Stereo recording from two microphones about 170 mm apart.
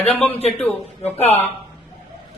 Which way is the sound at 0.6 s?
10° left (ahead or behind).